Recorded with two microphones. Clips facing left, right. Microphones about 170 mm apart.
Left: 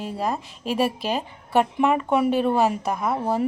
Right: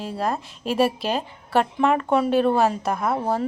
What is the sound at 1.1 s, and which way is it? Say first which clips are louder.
A woman's voice: even; 10° left (ahead or behind).